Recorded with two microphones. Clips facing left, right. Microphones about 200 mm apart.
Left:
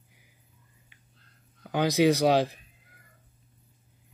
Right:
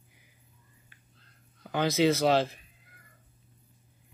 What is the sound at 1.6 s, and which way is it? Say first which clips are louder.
Speech: left 2 dB; 15° left (ahead or behind).